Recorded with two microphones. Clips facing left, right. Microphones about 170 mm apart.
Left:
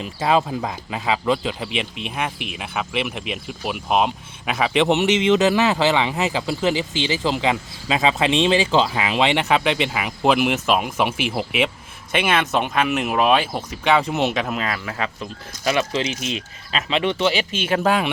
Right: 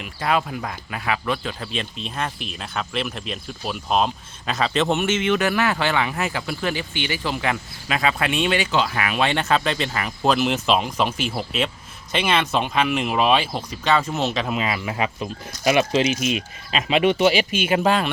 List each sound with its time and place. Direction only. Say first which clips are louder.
0.0 s speech: left 3 dB; 25° left (ahead or behind)
6.7 s speech: left 4 dB; 90° left
7.1 s speech: left 4 dB; 25° left (ahead or behind)
14.4 s speech: right 1 dB; 5° right (ahead or behind)
14.8 s speech: right 2 dB; 15° right (ahead or behind)
17.8 s speech: left 2 dB; 10° left (ahead or behind)